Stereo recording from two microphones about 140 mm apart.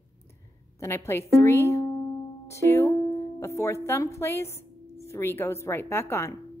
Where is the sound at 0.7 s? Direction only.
20° left (ahead or behind).